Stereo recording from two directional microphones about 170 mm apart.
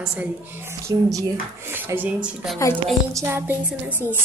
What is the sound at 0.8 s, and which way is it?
A woman's voice, 20° right (ahead or behind).